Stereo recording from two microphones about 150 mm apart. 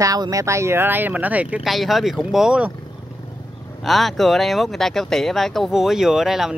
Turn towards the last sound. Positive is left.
turn(degrees=0)  # may be behind; listen again after turning